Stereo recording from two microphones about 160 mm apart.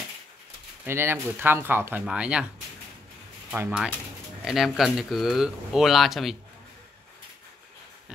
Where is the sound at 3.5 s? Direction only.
5° right (ahead or behind).